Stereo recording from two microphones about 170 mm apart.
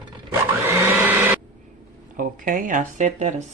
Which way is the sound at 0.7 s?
10° right (ahead or behind).